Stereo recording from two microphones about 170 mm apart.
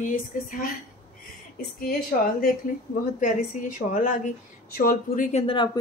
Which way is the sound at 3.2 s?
50° left (ahead or behind).